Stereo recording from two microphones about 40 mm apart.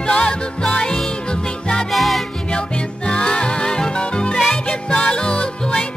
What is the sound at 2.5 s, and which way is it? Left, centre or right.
Music, left.